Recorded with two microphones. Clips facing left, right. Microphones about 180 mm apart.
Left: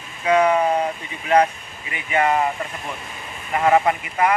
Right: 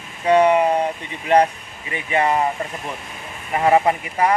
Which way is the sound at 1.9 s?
30° right (ahead or behind).